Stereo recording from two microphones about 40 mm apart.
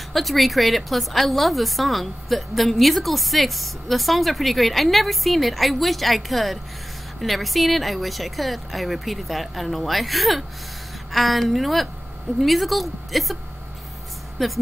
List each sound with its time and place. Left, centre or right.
0.1 s a woman's voice: centre
14.4 s a woman's voice: centre